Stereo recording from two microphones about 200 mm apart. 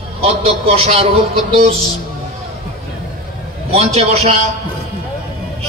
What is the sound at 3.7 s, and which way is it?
Speech, 30° right (ahead or behind).